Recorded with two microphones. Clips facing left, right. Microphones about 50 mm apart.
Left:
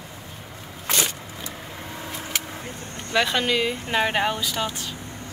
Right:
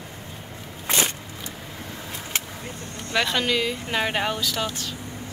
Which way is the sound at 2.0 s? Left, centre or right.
Centre.